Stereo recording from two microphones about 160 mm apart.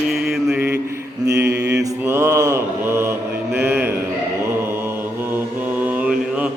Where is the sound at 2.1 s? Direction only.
15° right (ahead or behind).